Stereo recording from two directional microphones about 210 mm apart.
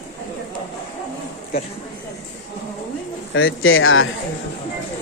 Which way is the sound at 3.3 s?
70° left (ahead or behind).